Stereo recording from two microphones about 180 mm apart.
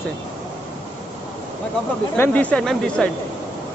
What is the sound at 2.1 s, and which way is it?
Speech, 10° left (ahead or behind).